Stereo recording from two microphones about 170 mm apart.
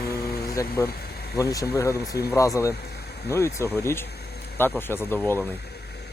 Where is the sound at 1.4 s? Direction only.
20° left (ahead or behind).